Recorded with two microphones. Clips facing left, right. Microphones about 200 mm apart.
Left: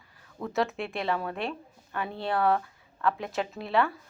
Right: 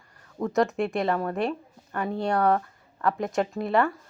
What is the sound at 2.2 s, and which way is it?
Speech, centre (ahead or behind).